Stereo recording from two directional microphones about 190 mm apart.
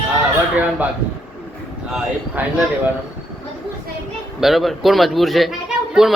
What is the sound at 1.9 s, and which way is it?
Speech, centre (ahead or behind).